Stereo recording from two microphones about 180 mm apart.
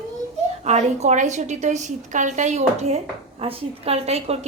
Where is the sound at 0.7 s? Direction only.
40° right (ahead or behind).